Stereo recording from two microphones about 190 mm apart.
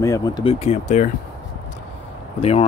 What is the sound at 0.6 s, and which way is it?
Speech, 40° left (ahead or behind).